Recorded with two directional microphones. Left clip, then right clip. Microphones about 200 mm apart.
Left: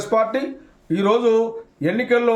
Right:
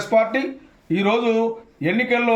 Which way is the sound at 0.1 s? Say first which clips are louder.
Right 1 dB; 25° left (ahead or behind).